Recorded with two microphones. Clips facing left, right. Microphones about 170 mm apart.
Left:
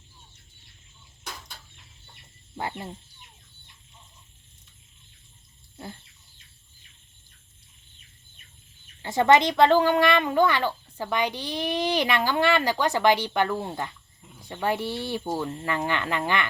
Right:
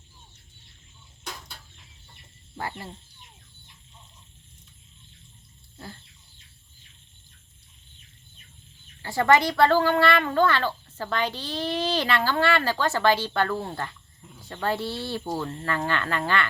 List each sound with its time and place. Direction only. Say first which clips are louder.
2.6 s speech: left 2 dB; 20° left (ahead or behind)
5.7 s a sound: left 2 dB; 20° left (ahead or behind)
9.0 s speech: left 2 dB; 20° left (ahead or behind)